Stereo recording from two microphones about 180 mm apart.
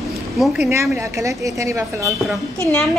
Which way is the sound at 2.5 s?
15° left (ahead or behind).